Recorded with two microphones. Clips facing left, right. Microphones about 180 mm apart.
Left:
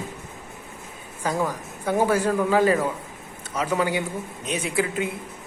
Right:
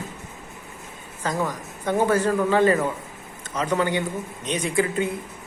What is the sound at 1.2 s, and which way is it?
A man's voice, 10° left (ahead or behind).